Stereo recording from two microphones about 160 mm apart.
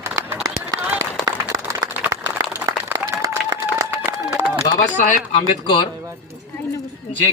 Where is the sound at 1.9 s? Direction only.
10° right (ahead or behind).